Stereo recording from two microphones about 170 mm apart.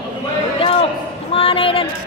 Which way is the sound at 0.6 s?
35° left (ahead or behind).